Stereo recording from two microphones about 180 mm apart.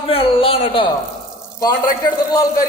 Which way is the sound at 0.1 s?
30° left (ahead or behind).